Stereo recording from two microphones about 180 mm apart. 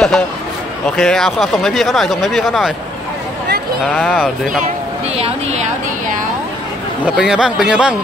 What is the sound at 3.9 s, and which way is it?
Speech, centre (ahead or behind).